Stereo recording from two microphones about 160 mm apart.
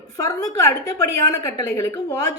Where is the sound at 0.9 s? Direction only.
15° left (ahead or behind).